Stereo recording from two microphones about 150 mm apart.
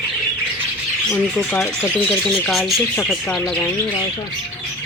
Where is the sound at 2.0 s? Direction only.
5° left (ahead or behind).